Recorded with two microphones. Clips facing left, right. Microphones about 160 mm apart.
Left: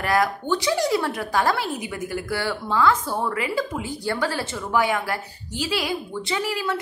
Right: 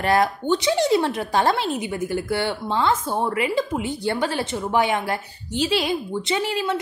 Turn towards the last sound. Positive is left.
turn(degrees=-25)  # may be behind; listen again after turning